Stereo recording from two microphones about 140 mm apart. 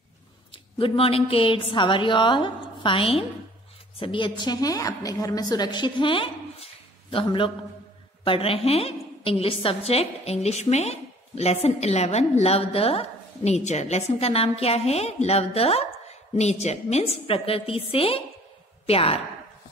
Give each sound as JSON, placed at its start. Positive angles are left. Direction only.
{"t": 0.7, "sound": "a woman's voice", "side_deg": 40}